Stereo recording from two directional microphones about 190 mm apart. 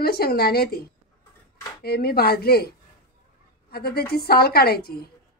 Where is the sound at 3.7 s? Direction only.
55° left (ahead or behind).